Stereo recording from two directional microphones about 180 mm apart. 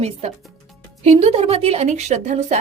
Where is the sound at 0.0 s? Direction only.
35° right (ahead or behind).